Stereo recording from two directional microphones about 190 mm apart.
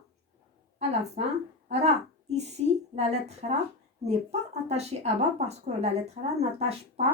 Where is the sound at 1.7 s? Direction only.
35° right (ahead or behind).